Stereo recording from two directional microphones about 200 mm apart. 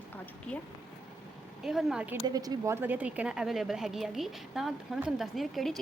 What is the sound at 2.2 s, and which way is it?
A woman's voice, 20° right (ahead or behind).